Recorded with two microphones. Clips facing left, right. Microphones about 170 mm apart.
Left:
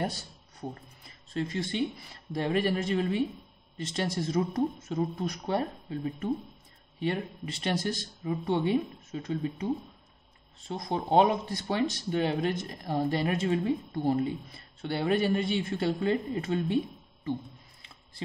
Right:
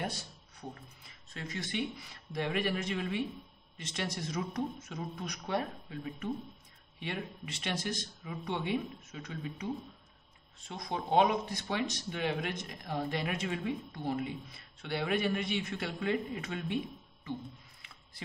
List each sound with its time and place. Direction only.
0.0 s a sound: 35° left (ahead or behind)
1.3 s speech: 30° left (ahead or behind)
10.7 s speech: 35° left (ahead or behind)